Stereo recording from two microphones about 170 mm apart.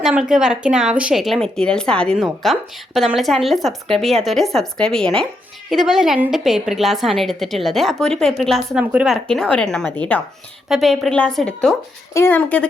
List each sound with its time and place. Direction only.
0.0 s speech: 5° right (ahead or behind)
9.2 s a woman's voice: 5° left (ahead or behind)